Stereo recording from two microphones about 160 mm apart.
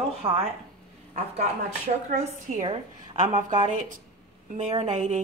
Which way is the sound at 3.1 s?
50° right (ahead or behind).